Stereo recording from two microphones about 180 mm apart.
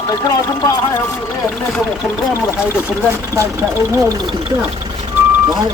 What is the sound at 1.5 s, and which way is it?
Speech, 5° left (ahead or behind).